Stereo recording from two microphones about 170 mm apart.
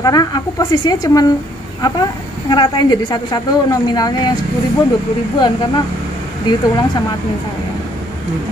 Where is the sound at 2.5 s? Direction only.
25° left (ahead or behind).